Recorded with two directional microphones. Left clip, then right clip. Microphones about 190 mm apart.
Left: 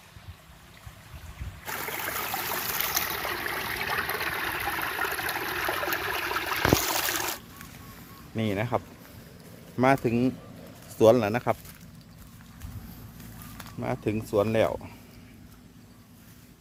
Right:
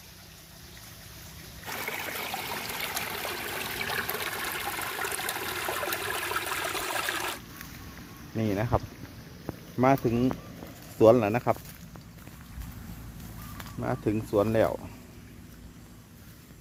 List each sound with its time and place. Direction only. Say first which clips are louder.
1.6 s boat: left 1 dB; 5° left (ahead or behind)
2.1 s stream: left 3 dB; 15° right (ahead or behind)
3.3 s water: left 3 dB; 15° right (ahead or behind)
8.4 s speech: even; 10° left (ahead or behind)
10.9 s speech: even; 5° left (ahead or behind)
13.6 s speech: even; 10° left (ahead or behind)